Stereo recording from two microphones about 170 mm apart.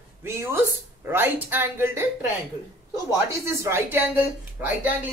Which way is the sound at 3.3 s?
15° right (ahead or behind).